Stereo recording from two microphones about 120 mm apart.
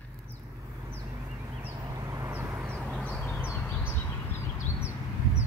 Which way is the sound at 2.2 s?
15° right (ahead or behind).